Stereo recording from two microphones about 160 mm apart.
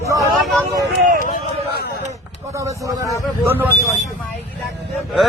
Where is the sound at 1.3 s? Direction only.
80° left.